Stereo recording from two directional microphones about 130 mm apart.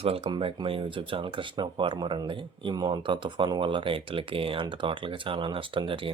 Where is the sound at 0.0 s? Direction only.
50° right (ahead or behind).